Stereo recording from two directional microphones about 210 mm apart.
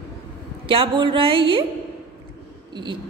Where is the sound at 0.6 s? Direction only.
25° right (ahead or behind).